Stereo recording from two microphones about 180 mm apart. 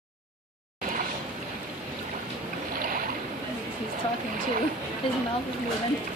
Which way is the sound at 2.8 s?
50° right (ahead or behind).